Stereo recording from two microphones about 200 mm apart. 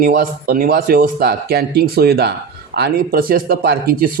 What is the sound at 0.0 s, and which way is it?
Speech, 45° right (ahead or behind).